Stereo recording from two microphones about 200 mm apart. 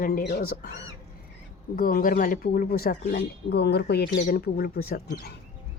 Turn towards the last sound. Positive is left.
turn(degrees=50)  # may be behind; listen again after turning